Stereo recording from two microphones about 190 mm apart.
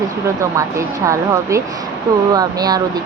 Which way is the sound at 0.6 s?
15° right (ahead or behind).